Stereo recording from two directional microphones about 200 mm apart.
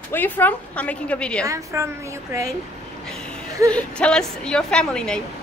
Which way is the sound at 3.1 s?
5° left (ahead or behind).